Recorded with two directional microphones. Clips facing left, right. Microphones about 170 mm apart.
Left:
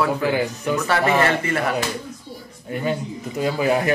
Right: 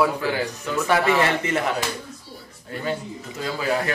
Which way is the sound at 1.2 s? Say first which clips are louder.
Left 2 dB; 20° right (ahead or behind).